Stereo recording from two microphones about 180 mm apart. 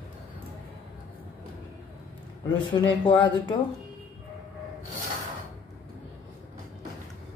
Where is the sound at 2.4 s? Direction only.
25° left (ahead or behind).